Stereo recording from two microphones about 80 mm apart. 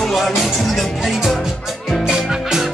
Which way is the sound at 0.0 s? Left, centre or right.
Centre.